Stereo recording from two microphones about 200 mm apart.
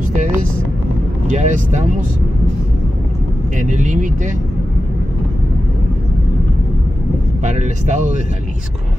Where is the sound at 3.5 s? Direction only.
40° right (ahead or behind).